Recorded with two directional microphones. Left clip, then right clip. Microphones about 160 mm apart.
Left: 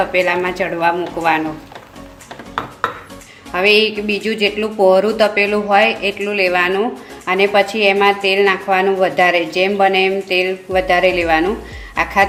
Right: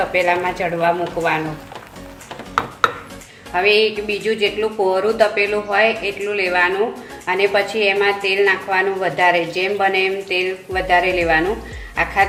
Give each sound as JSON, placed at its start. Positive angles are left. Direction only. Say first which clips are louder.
{"t": 0.1, "sound": "a woman's voice", "louder": "left 1 dB", "side_deg": 55}
{"t": 3.5, "sound": "a woman's voice", "louder": "left 2 dB", "side_deg": 60}